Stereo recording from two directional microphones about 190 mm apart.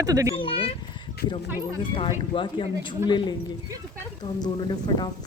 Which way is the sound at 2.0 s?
25° left (ahead or behind).